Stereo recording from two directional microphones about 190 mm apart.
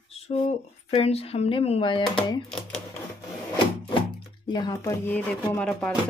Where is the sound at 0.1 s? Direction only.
35° left (ahead or behind).